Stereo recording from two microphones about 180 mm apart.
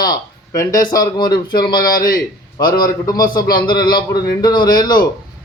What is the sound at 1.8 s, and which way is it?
Speech, 50° left (ahead or behind).